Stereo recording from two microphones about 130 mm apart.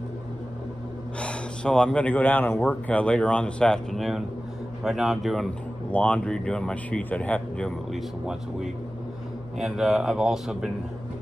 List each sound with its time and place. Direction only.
1.2 s speech: 10° left (ahead or behind)
9.6 s speech: 5° right (ahead or behind)